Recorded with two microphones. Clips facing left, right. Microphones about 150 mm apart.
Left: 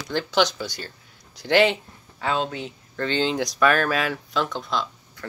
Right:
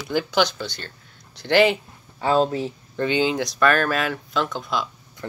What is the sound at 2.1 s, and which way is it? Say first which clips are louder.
Speech: right 6 dB; 30° right (ahead or behind).